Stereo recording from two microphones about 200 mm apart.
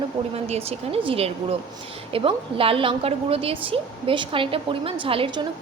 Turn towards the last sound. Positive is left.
turn(degrees=-25)  # may be behind; listen again after turning